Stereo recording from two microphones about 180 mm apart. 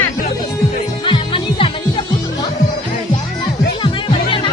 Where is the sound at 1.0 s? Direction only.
30° left (ahead or behind).